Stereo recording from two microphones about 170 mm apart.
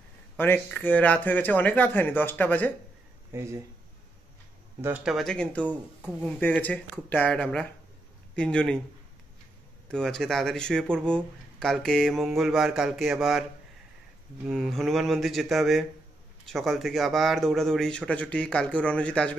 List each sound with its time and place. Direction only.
0.4 s speech: 10° left (ahead or behind)
3.3 s speech: 15° right (ahead or behind)
4.8 s speech: 5° right (ahead or behind)
5.7 s speech: 5° right (ahead or behind)
6.4 s speech: 10° left (ahead or behind)
9.8 s speech: 5° left (ahead or behind)
14.5 s speech: centre (ahead or behind)